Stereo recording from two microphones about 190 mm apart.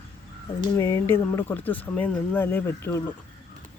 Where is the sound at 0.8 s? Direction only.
15° left (ahead or behind).